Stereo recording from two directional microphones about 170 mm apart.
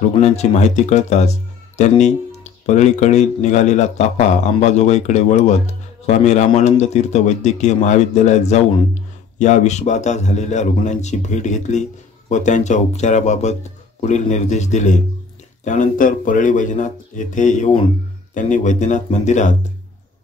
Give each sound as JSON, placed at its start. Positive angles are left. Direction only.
{"t": 0.2, "sound": "speech", "side_deg": 40}